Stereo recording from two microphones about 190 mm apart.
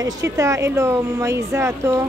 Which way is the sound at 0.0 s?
15° right (ahead or behind).